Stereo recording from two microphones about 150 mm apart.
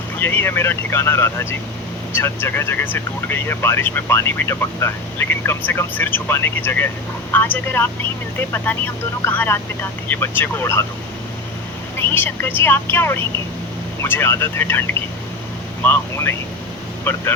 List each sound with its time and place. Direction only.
0.2 s speech: 15° left (ahead or behind)
11.9 s speech: 15° left (ahead or behind)